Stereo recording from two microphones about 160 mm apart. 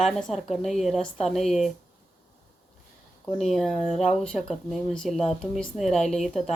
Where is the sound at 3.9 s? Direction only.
45° left (ahead or behind).